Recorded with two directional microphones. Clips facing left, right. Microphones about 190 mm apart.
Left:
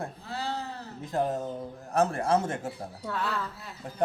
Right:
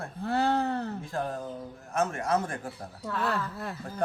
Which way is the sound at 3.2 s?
55° right (ahead or behind).